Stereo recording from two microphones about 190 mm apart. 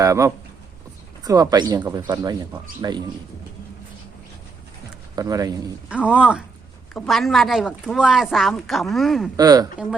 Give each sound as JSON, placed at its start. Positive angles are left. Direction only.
{"t": 0.0, "sound": "speech", "side_deg": -15}
{"t": 5.1, "sound": "speech", "side_deg": -20}
{"t": 6.1, "sound": "a woman's voice", "side_deg": -5}
{"t": 9.3, "sound": "speech", "side_deg": -20}